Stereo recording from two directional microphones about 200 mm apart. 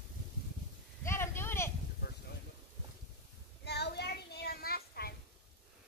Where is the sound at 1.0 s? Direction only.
10° left (ahead or behind).